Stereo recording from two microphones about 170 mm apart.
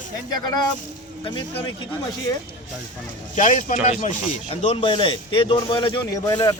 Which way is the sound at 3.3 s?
50° left (ahead or behind).